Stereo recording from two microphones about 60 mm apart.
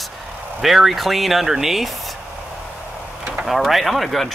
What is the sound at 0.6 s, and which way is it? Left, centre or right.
Speech, centre.